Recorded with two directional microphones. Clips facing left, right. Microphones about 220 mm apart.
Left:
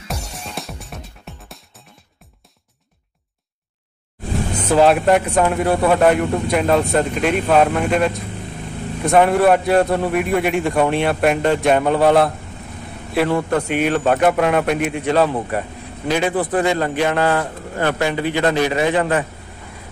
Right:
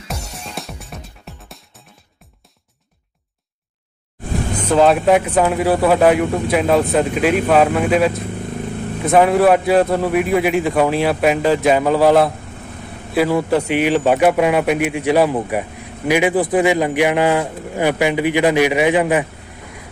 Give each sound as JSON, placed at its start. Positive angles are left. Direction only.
{"t": 0.1, "sound": "music", "side_deg": 0}
{"t": 4.6, "sound": "a man's voice", "side_deg": 0}